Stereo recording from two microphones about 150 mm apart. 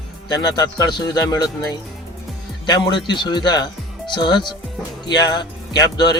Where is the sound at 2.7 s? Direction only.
30° left (ahead or behind).